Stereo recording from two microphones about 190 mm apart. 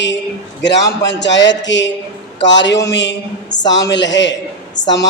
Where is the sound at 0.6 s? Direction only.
70° left (ahead or behind).